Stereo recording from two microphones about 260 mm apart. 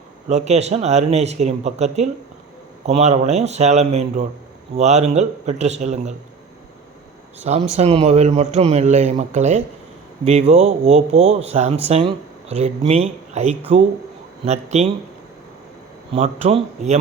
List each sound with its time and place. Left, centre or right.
0.3 s speech: right
7.3 s speech: right
16.1 s speech: right